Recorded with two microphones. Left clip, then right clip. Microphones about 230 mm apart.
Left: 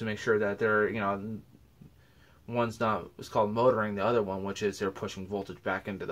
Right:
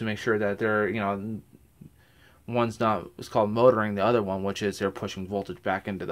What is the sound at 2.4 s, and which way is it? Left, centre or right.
Speech, right.